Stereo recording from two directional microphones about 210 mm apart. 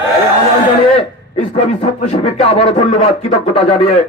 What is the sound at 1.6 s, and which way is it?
Speech, 30° left (ahead or behind).